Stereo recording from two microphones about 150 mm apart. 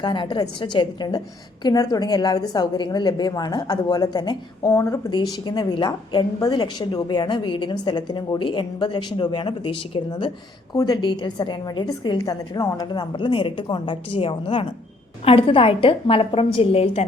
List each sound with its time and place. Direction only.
0.0 s a woman's voice: 30° left (ahead or behind)
5.1 s a woman's voice: 30° left (ahead or behind)